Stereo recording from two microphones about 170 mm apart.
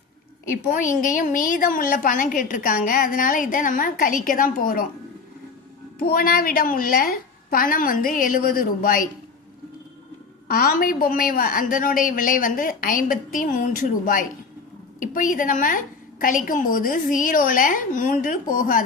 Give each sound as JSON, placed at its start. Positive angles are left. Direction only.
{"t": 0.5, "sound": "a woman's voice", "side_deg": 50}
{"t": 6.0, "sound": "a woman's voice", "side_deg": 60}
{"t": 10.5, "sound": "a woman's voice", "side_deg": 60}